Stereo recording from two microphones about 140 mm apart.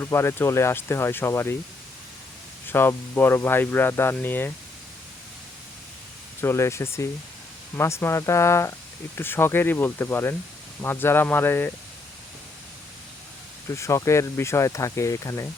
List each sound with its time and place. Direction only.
0.0 s speech: 20° left (ahead or behind)
2.6 s speech: 15° left (ahead or behind)
6.4 s speech: 20° left (ahead or behind)
13.7 s speech: 20° left (ahead or behind)